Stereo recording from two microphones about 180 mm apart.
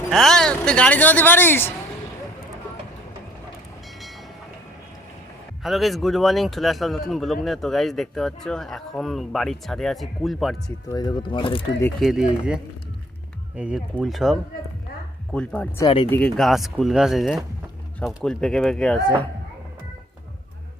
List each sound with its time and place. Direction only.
0.1 s speech: centre (ahead or behind)
5.6 s speech: centre (ahead or behind)
10.8 s speech: 20° left (ahead or behind)
11.9 s speech: centre (ahead or behind)
13.6 s speech: 5° right (ahead or behind)